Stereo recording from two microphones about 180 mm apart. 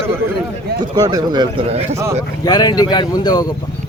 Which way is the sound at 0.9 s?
20° right (ahead or behind).